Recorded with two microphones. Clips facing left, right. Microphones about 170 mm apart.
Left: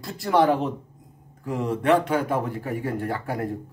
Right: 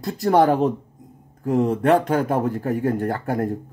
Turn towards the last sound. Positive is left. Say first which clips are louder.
# right 5 dB
turn(degrees=-45)  # may be behind; listen again after turning